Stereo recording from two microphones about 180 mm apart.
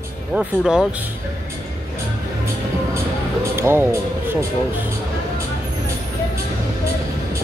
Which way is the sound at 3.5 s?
15° right (ahead or behind).